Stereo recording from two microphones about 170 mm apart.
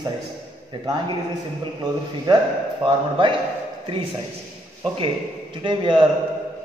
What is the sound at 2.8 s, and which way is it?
Speech, 30° right (ahead or behind).